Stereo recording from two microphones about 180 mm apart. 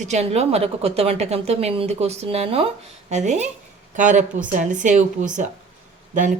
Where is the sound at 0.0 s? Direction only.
40° right (ahead or behind).